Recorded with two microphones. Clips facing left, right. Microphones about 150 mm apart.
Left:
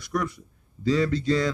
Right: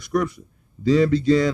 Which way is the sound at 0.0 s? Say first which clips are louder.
Right 6 dB; 20° right (ahead or behind).